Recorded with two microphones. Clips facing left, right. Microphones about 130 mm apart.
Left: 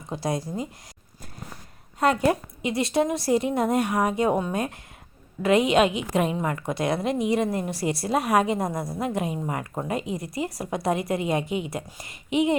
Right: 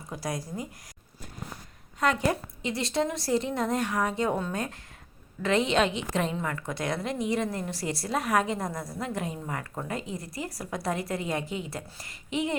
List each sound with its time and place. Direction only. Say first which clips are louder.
0.1 s a woman's voice: left 6 dB; 25° left (ahead or behind)
2.3 s a woman's voice: left 5 dB; 15° left (ahead or behind)